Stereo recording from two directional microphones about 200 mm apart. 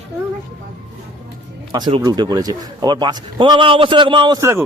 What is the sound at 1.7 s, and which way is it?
A man's voice, 20° right (ahead or behind).